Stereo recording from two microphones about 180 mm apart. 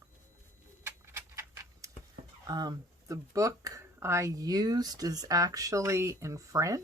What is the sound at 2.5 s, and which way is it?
Speech, 20° right (ahead or behind).